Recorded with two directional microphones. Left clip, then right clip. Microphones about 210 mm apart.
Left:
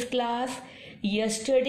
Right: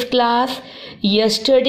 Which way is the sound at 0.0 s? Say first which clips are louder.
Right 12 dB; 30° right (ahead or behind).